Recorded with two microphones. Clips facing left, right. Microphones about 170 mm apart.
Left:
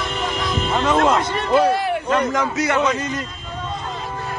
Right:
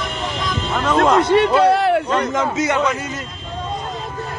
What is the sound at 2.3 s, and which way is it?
Speech, 25° right (ahead or behind).